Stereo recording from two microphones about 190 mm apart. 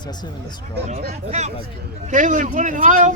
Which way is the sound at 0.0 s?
20° left (ahead or behind).